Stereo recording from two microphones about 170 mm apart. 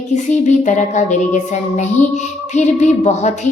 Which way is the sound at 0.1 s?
45° left (ahead or behind).